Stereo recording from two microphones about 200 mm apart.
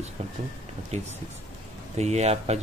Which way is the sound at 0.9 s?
35° right (ahead or behind).